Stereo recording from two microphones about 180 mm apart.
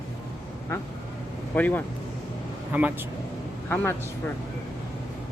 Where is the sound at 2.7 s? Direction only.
10° right (ahead or behind).